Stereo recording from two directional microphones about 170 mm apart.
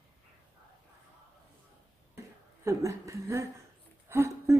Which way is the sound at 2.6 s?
20° right (ahead or behind).